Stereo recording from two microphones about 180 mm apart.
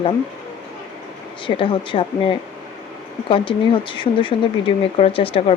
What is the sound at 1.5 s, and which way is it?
Speech, 30° left (ahead or behind).